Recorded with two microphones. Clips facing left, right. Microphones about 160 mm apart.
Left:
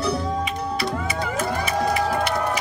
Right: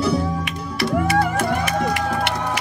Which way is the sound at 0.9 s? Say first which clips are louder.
Right 7 dB; 75° right (ahead or behind).